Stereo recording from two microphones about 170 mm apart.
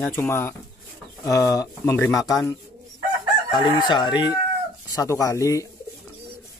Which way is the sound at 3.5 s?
25° left (ahead or behind).